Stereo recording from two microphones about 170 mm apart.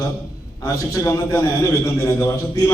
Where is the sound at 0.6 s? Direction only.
15° left (ahead or behind).